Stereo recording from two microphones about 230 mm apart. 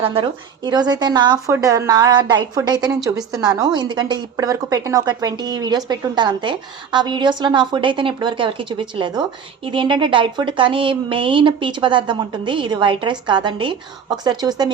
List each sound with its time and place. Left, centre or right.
0.0 s speech: right